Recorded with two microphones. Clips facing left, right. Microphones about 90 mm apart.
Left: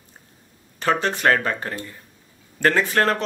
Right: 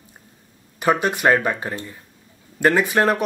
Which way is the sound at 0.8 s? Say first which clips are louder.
Right 2 dB; 15° right (ahead or behind).